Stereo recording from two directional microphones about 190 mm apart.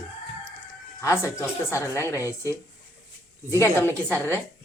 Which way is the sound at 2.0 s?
15° right (ahead or behind).